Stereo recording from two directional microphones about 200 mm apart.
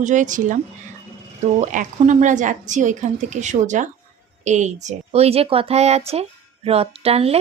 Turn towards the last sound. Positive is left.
turn(degrees=-30)  # may be behind; listen again after turning